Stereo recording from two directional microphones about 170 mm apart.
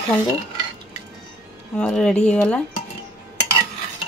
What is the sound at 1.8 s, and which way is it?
Speech, 5° left (ahead or behind).